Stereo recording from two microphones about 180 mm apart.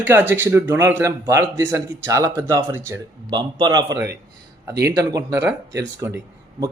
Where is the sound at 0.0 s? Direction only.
10° right (ahead or behind).